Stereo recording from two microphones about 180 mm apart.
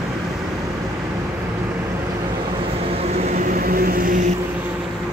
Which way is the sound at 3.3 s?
50° right (ahead or behind).